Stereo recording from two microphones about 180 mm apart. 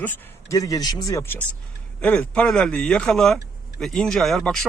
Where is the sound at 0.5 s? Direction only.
20° left (ahead or behind).